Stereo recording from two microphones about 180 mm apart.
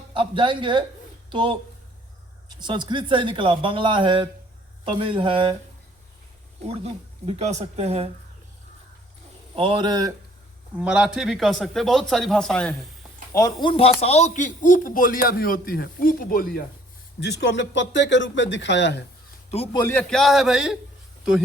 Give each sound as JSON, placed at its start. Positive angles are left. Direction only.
{"t": 0.1, "sound": "speech", "side_deg": -25}
{"t": 2.6, "sound": "speech", "side_deg": -25}
{"t": 6.7, "sound": "speech", "side_deg": -35}
{"t": 9.6, "sound": "speech", "side_deg": -25}
{"t": 10.8, "sound": "a man's voice", "side_deg": -5}
{"t": 13.3, "sound": "a man's voice", "side_deg": 20}
{"t": 17.2, "sound": "speech", "side_deg": 75}
{"t": 19.7, "sound": "a man's voice", "side_deg": 15}